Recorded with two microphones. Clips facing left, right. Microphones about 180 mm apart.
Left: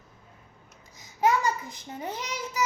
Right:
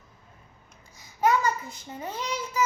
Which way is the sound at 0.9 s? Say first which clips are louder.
Right 1 dB; 15° left (ahead or behind).